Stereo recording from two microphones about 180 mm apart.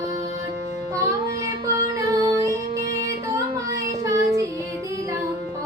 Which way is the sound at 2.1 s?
20° right (ahead or behind).